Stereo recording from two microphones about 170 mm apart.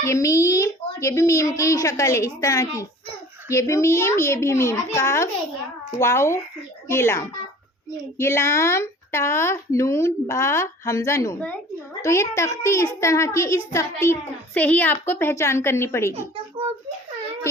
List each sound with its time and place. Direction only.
0.0 s a child's voice: 15° left (ahead or behind)